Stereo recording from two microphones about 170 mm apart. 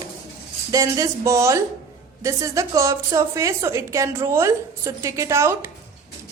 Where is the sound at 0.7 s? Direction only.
20° right (ahead or behind).